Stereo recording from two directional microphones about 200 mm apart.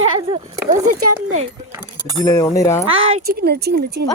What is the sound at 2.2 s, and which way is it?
Speech, 15° left (ahead or behind).